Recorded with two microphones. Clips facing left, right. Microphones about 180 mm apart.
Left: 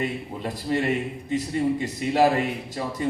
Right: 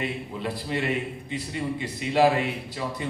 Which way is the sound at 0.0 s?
45° left (ahead or behind).